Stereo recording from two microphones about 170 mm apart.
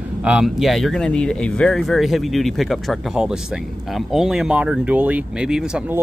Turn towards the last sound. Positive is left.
turn(degrees=-5)  # may be behind; listen again after turning